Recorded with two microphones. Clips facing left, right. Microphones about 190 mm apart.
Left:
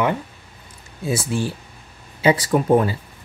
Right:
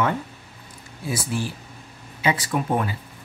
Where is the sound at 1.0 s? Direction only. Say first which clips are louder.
Left 4 dB; 25° left (ahead or behind).